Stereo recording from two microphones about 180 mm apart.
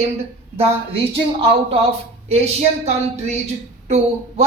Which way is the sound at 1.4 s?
30° right (ahead or behind).